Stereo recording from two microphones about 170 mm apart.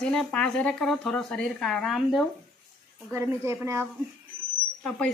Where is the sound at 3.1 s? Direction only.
15° right (ahead or behind).